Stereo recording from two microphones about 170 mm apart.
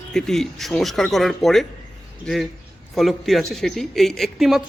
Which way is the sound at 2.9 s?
Centre (ahead or behind).